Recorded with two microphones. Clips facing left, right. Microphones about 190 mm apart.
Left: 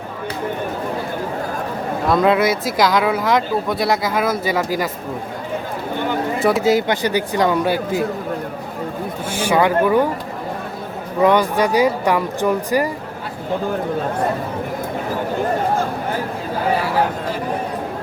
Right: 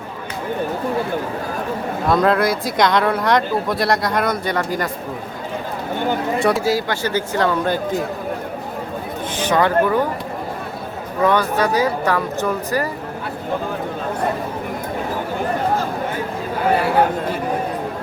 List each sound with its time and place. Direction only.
2.0 s speech: centre (ahead or behind)
6.6 s speech: 20° left (ahead or behind)
9.3 s speech: 10° left (ahead or behind)
11.2 s speech: 15° left (ahead or behind)